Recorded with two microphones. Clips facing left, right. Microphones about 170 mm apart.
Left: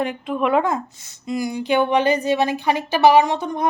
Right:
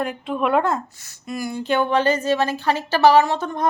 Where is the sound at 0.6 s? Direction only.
15° left (ahead or behind).